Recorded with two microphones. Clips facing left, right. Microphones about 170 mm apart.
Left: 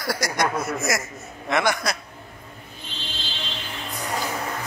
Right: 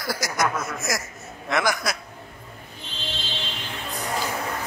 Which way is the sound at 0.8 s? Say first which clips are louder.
Left 3 dB; centre (ahead or behind).